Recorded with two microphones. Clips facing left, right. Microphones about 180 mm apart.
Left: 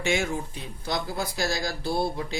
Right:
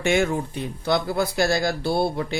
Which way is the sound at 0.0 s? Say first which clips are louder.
Right 6 dB; 55° right (ahead or behind).